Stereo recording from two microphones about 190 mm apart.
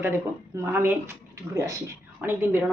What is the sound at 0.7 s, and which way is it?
Speech, 10° right (ahead or behind).